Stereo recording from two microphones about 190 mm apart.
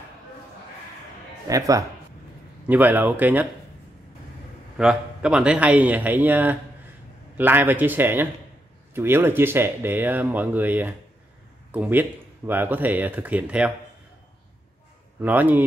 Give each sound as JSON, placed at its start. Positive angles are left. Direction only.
{"t": 1.5, "sound": "speech", "side_deg": -15}
{"t": 2.7, "sound": "speech", "side_deg": -10}
{"t": 4.7, "sound": "speech", "side_deg": -5}
{"t": 15.1, "sound": "speech", "side_deg": -10}